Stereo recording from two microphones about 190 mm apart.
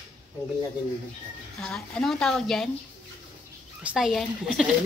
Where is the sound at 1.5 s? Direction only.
5° left (ahead or behind).